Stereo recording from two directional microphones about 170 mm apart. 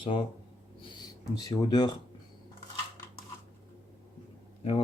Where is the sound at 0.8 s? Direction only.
25° left (ahead or behind).